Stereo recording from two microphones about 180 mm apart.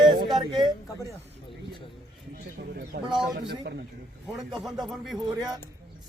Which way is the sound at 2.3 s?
55° right (ahead or behind).